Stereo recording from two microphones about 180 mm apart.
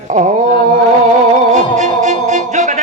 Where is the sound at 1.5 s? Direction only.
45° right (ahead or behind).